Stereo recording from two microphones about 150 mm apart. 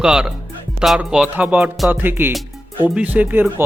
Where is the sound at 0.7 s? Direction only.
5° right (ahead or behind).